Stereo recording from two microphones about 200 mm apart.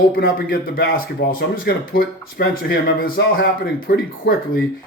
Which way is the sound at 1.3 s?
50° left (ahead or behind).